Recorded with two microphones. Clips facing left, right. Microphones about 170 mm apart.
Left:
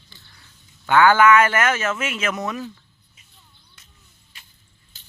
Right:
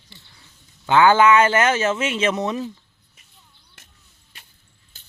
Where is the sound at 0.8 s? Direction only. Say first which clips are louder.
Even; 25° right (ahead or behind).